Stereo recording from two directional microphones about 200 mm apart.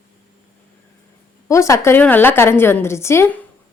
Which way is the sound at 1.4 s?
15° left (ahead or behind).